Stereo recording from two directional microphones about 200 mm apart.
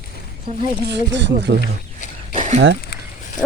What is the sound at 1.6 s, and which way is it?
Wild animals, 45° left (ahead or behind).